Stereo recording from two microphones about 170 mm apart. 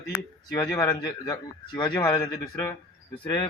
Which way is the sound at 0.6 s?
20° left (ahead or behind).